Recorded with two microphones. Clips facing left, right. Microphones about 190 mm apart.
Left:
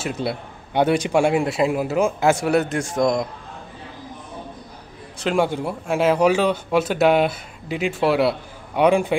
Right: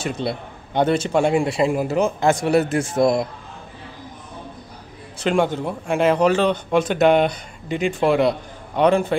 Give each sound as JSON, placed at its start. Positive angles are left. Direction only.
{"t": 0.0, "sound": "speech", "side_deg": 5}
{"t": 5.2, "sound": "speech", "side_deg": 5}